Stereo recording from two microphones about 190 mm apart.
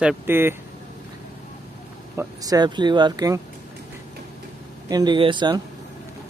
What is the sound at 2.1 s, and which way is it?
Speech, 20° right (ahead or behind).